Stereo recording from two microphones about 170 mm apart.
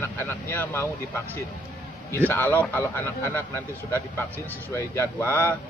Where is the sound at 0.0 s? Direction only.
15° left (ahead or behind).